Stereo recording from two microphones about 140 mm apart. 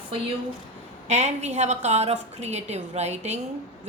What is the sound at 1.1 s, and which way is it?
A woman's voice, 50° right (ahead or behind).